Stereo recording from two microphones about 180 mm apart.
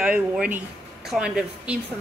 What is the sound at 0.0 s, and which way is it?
A woman's voice, 5° right (ahead or behind).